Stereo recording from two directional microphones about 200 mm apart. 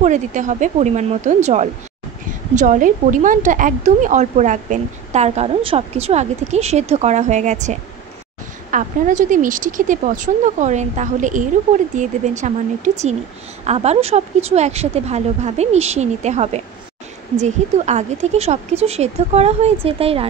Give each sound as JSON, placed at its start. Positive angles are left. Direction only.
{"t": 0.0, "sound": "speech", "side_deg": -35}
{"t": 8.7, "sound": "speech", "side_deg": -40}